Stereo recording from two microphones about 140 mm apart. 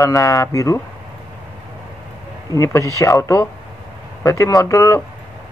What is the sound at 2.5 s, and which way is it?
Speech, 20° left (ahead or behind).